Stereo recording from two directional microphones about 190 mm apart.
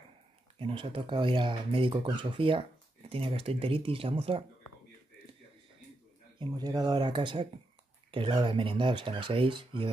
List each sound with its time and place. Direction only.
0.6 s speech: 30° right (ahead or behind)
6.4 s speech: 20° right (ahead or behind)